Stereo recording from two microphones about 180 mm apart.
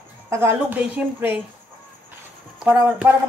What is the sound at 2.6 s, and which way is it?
Speech, 10° right (ahead or behind).